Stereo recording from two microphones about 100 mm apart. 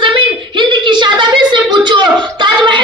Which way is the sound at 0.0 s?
55° right (ahead or behind).